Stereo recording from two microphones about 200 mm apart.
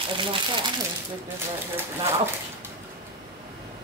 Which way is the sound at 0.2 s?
25° right (ahead or behind).